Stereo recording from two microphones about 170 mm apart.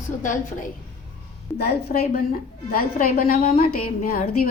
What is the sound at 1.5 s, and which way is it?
A woman's voice, 70° left (ahead or behind).